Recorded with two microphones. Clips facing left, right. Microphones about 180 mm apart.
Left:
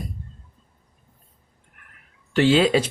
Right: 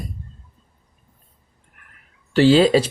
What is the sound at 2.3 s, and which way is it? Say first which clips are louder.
Speech: right 4 dB; 35° right (ahead or behind).